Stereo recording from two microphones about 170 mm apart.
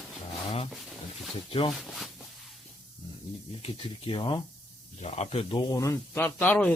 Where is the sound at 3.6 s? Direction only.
30° left (ahead or behind).